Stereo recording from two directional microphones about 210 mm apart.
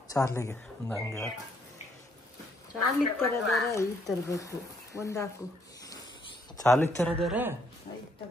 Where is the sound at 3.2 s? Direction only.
10° left (ahead or behind).